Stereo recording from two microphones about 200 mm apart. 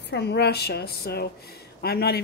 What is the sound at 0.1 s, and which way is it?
Speech, 55° left (ahead or behind).